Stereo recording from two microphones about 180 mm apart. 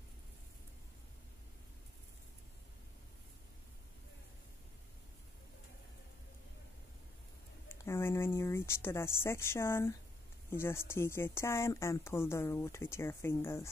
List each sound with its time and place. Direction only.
7.6 s speech: 15° left (ahead or behind)